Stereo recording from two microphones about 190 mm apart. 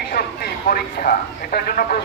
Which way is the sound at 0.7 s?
50° left (ahead or behind).